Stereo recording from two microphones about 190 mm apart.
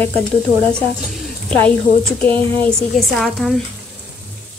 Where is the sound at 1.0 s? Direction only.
Centre (ahead or behind).